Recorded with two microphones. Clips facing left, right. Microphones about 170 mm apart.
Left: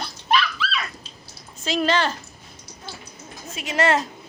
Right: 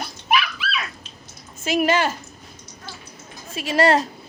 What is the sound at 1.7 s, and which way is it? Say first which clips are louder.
Speech: right 2 dB; 10° right (ahead or behind).